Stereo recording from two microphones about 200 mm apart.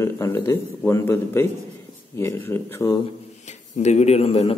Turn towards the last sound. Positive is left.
turn(degrees=30)  # may be behind; listen again after turning